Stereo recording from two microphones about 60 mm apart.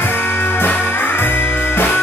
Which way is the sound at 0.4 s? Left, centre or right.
Left.